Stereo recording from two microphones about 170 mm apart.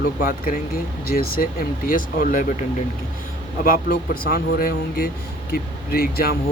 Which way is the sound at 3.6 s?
55° left (ahead or behind).